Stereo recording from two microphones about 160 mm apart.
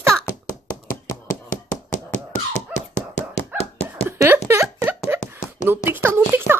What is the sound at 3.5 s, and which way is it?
Dog, 40° left (ahead or behind).